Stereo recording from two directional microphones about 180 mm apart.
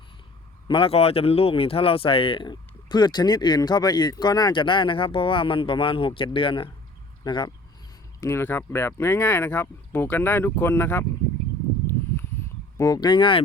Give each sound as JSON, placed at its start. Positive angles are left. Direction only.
{"t": 0.7, "sound": "speech", "side_deg": 30}
{"t": 8.2, "sound": "speech", "side_deg": 15}
{"t": 12.7, "sound": "speech", "side_deg": 20}